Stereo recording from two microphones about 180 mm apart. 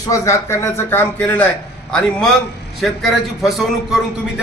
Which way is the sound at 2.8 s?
Centre (ahead or behind).